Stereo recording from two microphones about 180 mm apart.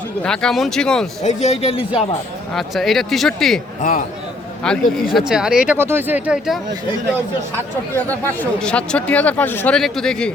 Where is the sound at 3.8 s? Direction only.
50° left (ahead or behind).